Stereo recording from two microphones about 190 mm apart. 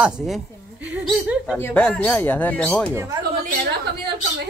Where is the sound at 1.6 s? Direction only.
5° left (ahead or behind).